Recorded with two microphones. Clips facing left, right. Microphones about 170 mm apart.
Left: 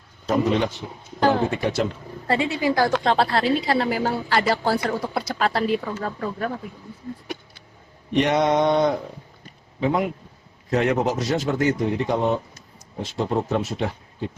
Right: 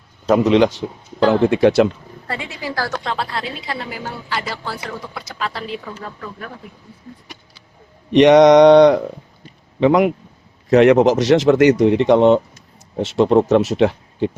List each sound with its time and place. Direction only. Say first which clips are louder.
0.3 s a man's voice: right 7 dB; 90° right
2.2 s a woman's voice: left 6 dB; 25° left (ahead or behind)
3.0 s a woman's voice: left 5 dB; 40° left (ahead or behind)
8.1 s speech: right 11 dB; 85° right